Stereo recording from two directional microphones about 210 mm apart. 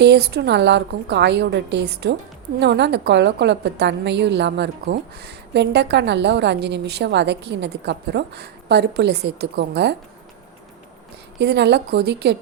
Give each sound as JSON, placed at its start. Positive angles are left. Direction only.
{"t": 0.0, "sound": "a woman's voice", "side_deg": -55}
{"t": 11.3, "sound": "a woman's voice", "side_deg": -55}